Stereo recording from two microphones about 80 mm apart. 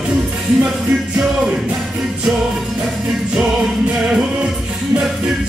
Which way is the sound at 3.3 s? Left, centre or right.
Centre.